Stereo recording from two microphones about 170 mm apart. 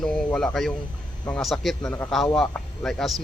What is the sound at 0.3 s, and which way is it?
A man's voice, 5° left (ahead or behind).